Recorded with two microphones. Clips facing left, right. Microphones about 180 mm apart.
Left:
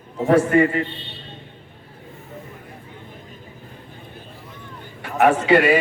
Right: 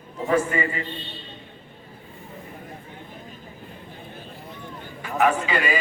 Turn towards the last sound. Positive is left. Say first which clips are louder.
# left 8 dB
turn(degrees=70)  # may be behind; listen again after turning